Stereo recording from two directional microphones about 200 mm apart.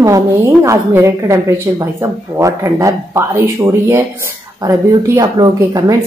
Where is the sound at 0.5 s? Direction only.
10° right (ahead or behind).